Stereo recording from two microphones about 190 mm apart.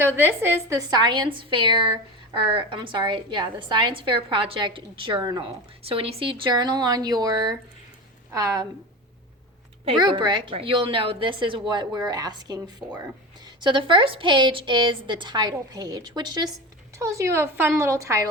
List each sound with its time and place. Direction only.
0.2 s a woman's voice: 10° right (ahead or behind)
10.0 s a woman's voice: 25° right (ahead or behind)